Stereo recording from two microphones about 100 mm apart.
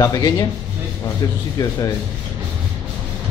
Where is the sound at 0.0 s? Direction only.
35° left (ahead or behind).